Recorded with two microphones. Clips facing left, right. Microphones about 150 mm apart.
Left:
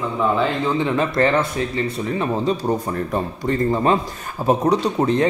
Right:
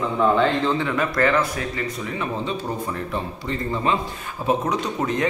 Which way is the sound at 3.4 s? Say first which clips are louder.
Left 7 dB; 45° left (ahead or behind).